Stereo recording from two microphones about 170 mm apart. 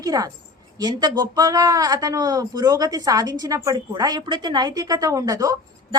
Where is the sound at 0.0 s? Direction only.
20° right (ahead or behind).